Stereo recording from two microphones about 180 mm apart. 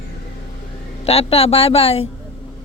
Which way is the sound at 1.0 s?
35° left (ahead or behind).